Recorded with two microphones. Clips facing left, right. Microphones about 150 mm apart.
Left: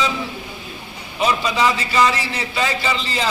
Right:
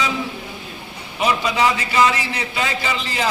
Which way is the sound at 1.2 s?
15° right (ahead or behind).